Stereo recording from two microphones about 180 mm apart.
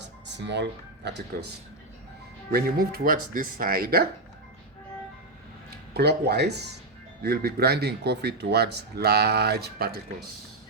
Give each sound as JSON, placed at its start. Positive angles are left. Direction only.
{"t": 0.0, "sound": "speech", "side_deg": -75}
{"t": 2.5, "sound": "speech", "side_deg": -55}
{"t": 5.9, "sound": "speech", "side_deg": -65}